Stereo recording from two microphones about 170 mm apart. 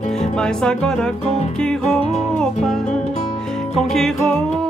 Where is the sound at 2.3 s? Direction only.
5° left (ahead or behind).